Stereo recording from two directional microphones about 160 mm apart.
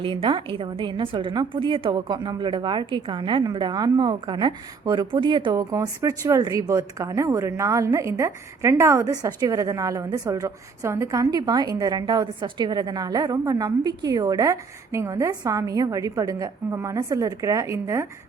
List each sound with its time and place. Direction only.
0.0 s a woman's voice: 30° right (ahead or behind)